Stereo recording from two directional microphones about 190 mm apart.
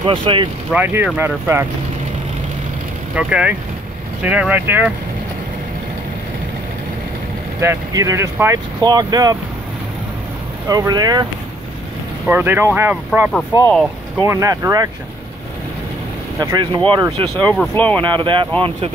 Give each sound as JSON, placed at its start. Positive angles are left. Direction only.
{"t": 0.0, "sound": "speech", "side_deg": -25}
{"t": 0.7, "sound": "speech", "side_deg": -10}
{"t": 3.2, "sound": "speech", "side_deg": -5}
{"t": 7.6, "sound": "speech", "side_deg": -15}
{"t": 10.7, "sound": "speech", "side_deg": -20}
{"t": 12.3, "sound": "speech", "side_deg": -10}
{"t": 13.7, "sound": "speech", "side_deg": 5}
{"t": 14.2, "sound": "speech", "side_deg": -15}
{"t": 16.3, "sound": "speech", "side_deg": -20}
{"t": 17.7, "sound": "speech", "side_deg": 10}
{"t": 18.1, "sound": "speech", "side_deg": -25}